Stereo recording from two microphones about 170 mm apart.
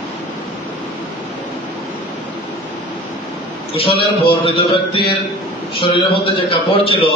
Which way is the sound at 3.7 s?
35° left (ahead or behind).